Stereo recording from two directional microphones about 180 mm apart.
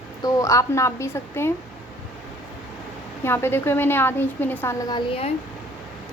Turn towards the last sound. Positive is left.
turn(degrees=30)  # may be behind; listen again after turning